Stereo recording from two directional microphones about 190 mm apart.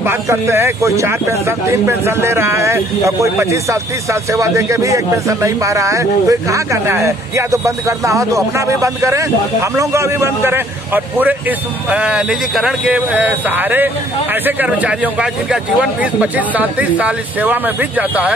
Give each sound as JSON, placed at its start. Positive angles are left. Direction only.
{"t": 0.0, "sound": "a man's voice", "side_deg": -15}